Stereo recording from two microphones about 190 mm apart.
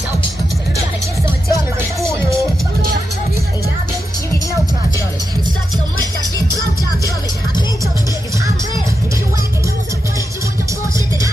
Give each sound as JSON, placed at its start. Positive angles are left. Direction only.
{"t": 1.2, "sound": "music", "side_deg": -15}